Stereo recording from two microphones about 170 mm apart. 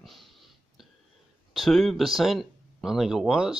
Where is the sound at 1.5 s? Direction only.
Centre (ahead or behind).